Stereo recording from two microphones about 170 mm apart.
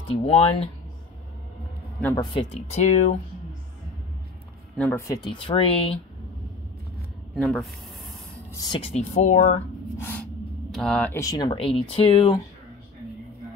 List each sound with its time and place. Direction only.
0.1 s speech: 35° left (ahead or behind)
2.1 s speech: 35° left (ahead or behind)
4.7 s speech: 10° left (ahead or behind); by 5.9 s 35° left (ahead or behind)
7.3 s speech: centre (ahead or behind)
8.7 s speech: 40° left (ahead or behind)
9.9 s writing: 15° left (ahead or behind)
10.7 s speech: 5° left (ahead or behind)
11.1 s speech: 20° left (ahead or behind)